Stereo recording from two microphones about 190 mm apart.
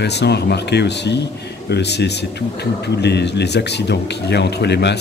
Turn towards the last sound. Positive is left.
turn(degrees=60)  # may be behind; listen again after turning